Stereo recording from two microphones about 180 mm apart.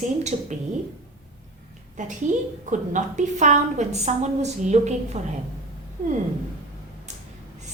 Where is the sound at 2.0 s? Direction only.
45° right (ahead or behind).